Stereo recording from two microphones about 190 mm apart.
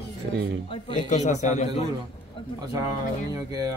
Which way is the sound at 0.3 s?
60° right (ahead or behind).